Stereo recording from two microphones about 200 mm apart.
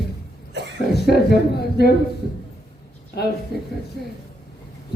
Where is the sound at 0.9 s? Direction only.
50° left (ahead or behind).